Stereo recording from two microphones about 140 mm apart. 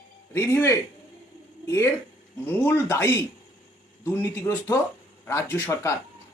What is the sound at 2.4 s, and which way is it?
Speech, 15° left (ahead or behind).